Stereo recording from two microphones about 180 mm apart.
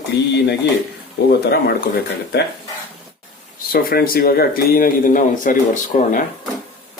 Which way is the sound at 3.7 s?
55° left (ahead or behind).